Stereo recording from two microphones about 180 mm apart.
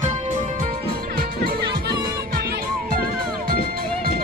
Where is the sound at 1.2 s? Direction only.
60° right (ahead or behind).